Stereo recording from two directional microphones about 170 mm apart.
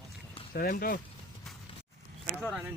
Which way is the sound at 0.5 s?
60° left (ahead or behind).